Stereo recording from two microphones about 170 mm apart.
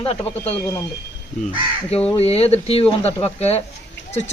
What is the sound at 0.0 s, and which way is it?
Speech, 35° left (ahead or behind).